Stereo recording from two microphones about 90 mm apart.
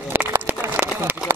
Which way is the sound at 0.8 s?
25° right (ahead or behind).